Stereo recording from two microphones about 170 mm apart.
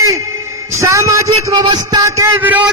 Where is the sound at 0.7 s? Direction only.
15° right (ahead or behind).